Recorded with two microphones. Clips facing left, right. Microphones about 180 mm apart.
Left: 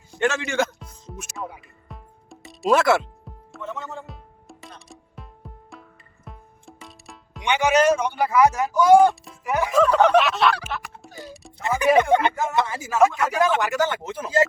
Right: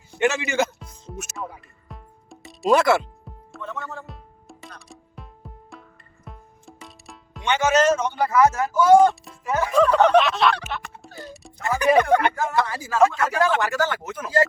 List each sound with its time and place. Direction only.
0.1 s a man's voice: 10° right (ahead or behind)
1.1 s music: 45° right (ahead or behind)
1.6 s music: centre (ahead or behind)
3.6 s music: 15° left (ahead or behind)
4.0 s music: centre (ahead or behind)
7.4 s speech: 15° left (ahead or behind)
9.4 s music: 15° left (ahead or behind)
11.6 s speech: 20° left (ahead or behind)